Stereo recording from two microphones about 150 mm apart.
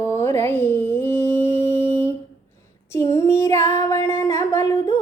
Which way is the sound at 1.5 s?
55° right (ahead or behind).